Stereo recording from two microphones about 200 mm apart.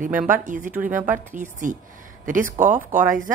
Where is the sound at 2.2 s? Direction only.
40° right (ahead or behind).